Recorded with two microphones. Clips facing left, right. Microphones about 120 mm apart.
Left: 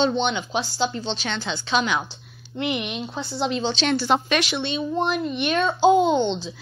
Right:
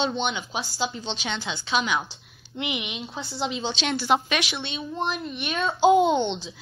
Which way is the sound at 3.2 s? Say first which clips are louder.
Left 4 dB; 60° left (ahead or behind).